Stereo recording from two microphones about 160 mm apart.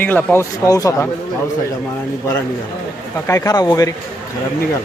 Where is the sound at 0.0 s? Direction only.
10° left (ahead or behind).